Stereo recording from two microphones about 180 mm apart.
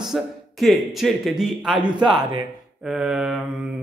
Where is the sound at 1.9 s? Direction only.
25° right (ahead or behind).